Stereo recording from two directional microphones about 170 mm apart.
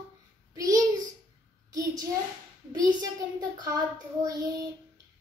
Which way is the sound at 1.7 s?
20° right (ahead or behind).